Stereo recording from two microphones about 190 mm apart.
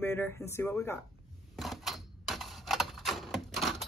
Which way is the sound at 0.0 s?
10° left (ahead or behind).